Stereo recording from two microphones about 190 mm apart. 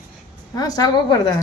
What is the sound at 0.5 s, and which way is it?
Speech, 20° left (ahead or behind).